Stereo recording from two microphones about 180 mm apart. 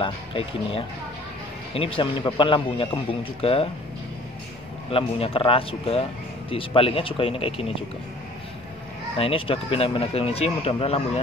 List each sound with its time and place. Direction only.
0.0 s a man's voice: 30° left (ahead or behind)
4.9 s a man's voice: 30° left (ahead or behind)
9.1 s a man's voice: 30° left (ahead or behind)